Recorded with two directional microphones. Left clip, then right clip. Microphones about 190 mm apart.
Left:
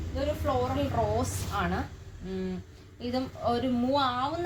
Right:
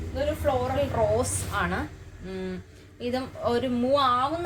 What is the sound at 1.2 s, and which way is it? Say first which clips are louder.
A woman's voice: right 4 dB; 25° right (ahead or behind).